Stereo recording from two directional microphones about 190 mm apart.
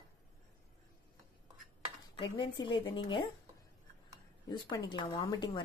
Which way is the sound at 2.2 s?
25° left (ahead or behind).